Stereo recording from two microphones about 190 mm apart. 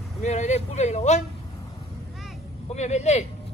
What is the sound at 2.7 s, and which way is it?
Speech, 35° left (ahead or behind).